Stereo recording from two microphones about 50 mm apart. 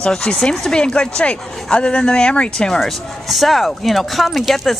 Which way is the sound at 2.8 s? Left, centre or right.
Centre.